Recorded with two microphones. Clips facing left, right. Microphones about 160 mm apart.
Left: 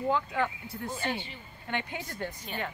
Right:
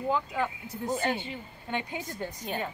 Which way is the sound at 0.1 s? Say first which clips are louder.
Even; 10° right (ahead or behind).